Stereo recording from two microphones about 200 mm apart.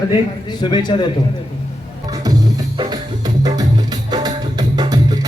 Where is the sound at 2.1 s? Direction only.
20° right (ahead or behind).